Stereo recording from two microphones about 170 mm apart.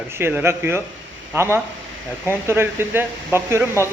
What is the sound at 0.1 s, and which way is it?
Speech, 15° right (ahead or behind).